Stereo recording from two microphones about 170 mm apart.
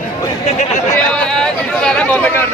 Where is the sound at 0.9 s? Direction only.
5° left (ahead or behind).